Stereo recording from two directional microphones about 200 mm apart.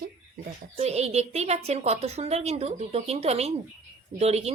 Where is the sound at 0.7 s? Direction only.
30° right (ahead or behind).